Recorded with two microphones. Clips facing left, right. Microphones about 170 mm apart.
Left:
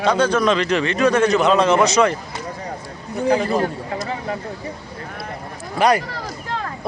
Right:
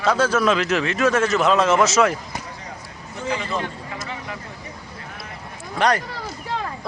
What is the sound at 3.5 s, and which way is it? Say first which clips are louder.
Speech: left 7 dB; 40° left (ahead or behind).